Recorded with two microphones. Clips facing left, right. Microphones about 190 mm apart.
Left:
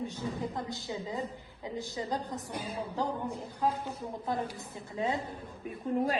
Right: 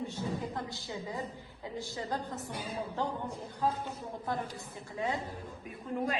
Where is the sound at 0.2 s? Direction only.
20° left (ahead or behind).